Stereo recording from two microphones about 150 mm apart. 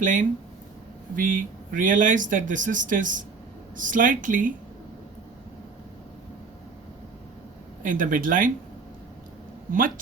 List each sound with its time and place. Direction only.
0.0 s speech: 60° right (ahead or behind)
7.8 s speech: 65° right (ahead or behind)